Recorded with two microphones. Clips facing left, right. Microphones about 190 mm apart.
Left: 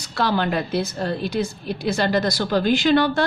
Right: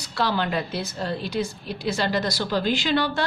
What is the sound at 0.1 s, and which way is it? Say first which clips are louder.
A woman's voice: left 3 dB; 50° left (ahead or behind).